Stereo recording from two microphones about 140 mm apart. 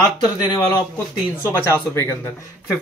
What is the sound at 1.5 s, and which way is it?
Speech, 20° left (ahead or behind).